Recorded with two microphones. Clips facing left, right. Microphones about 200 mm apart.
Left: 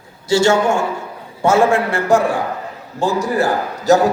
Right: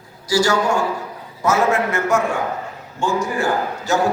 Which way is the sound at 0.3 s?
25° left (ahead or behind).